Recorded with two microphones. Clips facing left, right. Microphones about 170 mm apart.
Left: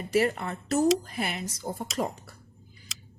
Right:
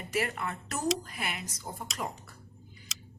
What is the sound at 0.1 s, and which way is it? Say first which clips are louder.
Speech: left 7 dB; 35° left (ahead or behind).